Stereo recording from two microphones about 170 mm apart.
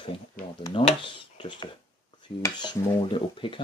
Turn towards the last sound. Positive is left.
turn(degrees=30)  # may be behind; listen again after turning